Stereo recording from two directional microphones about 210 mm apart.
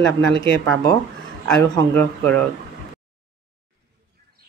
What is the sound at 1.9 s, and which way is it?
Speech, 10° left (ahead or behind).